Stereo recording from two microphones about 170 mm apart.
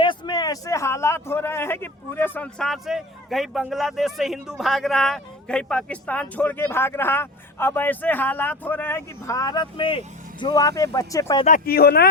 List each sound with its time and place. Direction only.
0.0 s a man's voice: 25° left (ahead or behind)
11.4 s speech: 55° left (ahead or behind)